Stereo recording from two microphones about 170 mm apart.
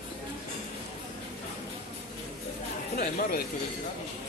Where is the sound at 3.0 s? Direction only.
60° left (ahead or behind).